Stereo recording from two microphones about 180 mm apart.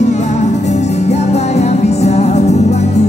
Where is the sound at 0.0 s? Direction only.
40° left (ahead or behind).